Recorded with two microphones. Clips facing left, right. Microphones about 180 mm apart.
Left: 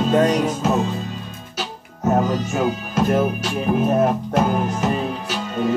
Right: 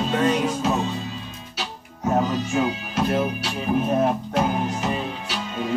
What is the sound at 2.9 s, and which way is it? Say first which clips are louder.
Speech: left 5 dB; 45° left (ahead or behind).